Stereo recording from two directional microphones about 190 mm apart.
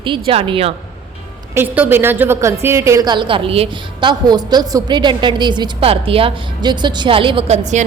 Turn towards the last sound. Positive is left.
turn(degrees=-40)  # may be behind; listen again after turning